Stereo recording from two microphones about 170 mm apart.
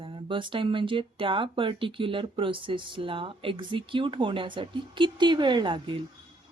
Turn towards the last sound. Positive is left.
turn(degrees=-30)  # may be behind; listen again after turning